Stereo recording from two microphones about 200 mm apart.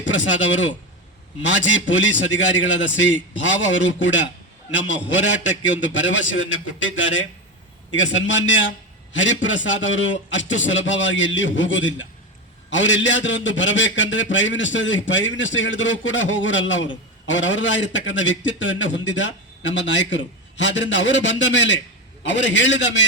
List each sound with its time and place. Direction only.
0.0 s a man's voice: 70° left (ahead or behind)
5.2 s a man's voice: 65° left (ahead or behind)